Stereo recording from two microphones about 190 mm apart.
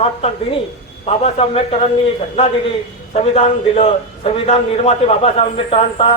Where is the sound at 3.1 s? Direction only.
35° left (ahead or behind).